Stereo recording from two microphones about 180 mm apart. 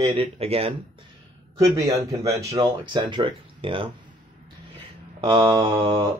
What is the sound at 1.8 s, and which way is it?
Speech, 15° right (ahead or behind).